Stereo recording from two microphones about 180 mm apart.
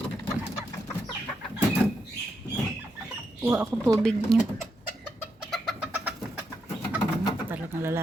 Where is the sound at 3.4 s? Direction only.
10° right (ahead or behind).